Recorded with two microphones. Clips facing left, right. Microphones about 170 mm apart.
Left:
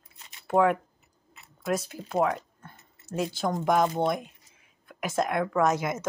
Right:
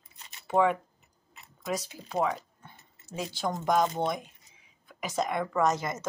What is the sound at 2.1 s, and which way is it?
Speech, centre (ahead or behind).